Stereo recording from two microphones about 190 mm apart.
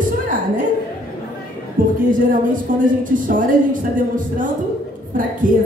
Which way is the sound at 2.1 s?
45° right (ahead or behind).